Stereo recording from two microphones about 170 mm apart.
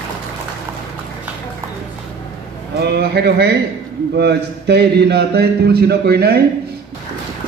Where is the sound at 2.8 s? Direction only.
70° right (ahead or behind).